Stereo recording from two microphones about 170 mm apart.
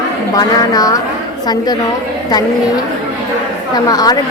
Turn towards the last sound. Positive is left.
turn(degrees=20)  # may be behind; listen again after turning